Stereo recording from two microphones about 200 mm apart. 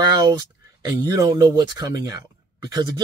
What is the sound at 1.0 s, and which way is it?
Speech, 15° right (ahead or behind).